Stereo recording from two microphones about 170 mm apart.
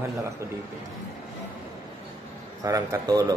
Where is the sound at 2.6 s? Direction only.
20° right (ahead or behind).